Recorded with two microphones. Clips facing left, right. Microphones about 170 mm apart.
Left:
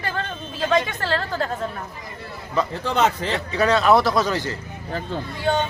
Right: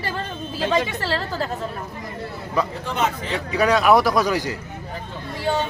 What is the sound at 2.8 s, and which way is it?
Speech, 80° left.